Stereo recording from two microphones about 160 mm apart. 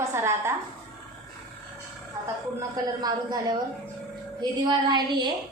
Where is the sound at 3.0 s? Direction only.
25° right (ahead or behind).